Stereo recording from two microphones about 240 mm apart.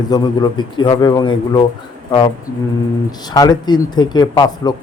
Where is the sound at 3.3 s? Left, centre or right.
Centre.